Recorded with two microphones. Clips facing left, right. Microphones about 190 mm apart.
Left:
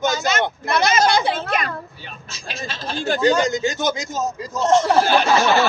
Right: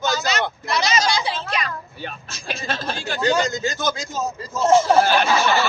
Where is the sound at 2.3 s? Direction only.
55° right (ahead or behind).